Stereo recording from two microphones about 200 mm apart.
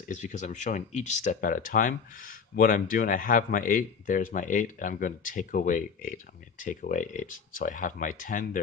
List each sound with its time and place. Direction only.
0.1 s speech: 35° left (ahead or behind)